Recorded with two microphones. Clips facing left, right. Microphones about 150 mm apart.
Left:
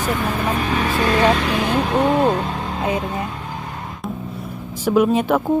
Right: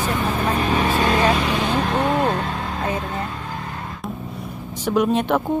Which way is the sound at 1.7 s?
10° left (ahead or behind).